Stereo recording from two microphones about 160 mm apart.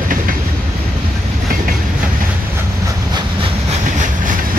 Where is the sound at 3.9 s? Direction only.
55° right (ahead or behind).